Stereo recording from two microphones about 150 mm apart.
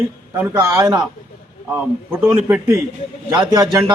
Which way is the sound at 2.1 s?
15° right (ahead or behind).